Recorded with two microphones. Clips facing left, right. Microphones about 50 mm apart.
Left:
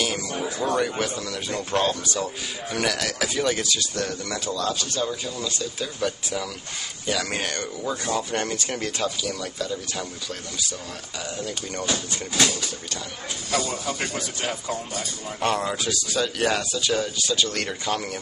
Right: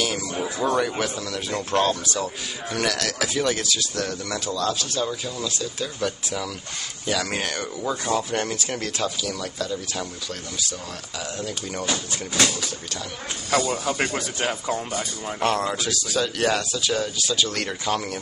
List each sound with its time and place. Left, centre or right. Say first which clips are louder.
0.0 s a man's voice: right 1 dB; centre
11.3 s a man's voice: even; centre
13.5 s speech: right 4 dB; right
15.4 s a man's voice: right 1 dB; centre